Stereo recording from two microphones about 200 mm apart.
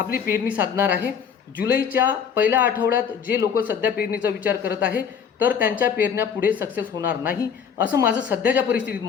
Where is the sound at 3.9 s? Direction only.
50° left (ahead or behind).